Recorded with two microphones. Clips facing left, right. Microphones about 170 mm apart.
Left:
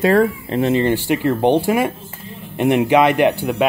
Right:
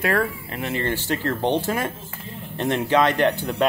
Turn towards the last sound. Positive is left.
turn(degrees=10)  # may be behind; listen again after turning